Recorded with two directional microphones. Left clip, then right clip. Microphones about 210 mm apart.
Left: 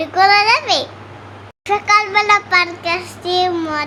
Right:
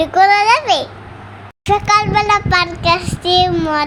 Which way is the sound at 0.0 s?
15° right (ahead or behind).